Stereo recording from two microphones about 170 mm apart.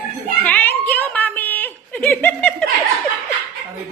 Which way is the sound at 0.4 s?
10° left (ahead or behind).